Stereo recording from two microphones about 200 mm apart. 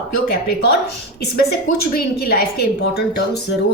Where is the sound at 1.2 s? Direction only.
50° left (ahead or behind).